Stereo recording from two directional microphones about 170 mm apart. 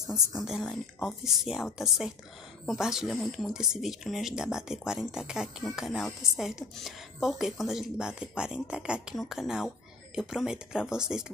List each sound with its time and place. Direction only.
0.3 s a woman's voice: centre (ahead or behind)